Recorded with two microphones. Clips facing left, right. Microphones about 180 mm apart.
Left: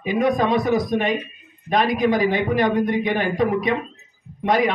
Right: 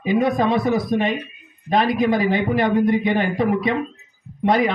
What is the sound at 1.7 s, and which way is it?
Speech, 25° right (ahead or behind).